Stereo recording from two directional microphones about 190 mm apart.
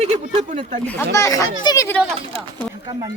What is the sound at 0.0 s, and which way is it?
Speech, 35° right (ahead or behind).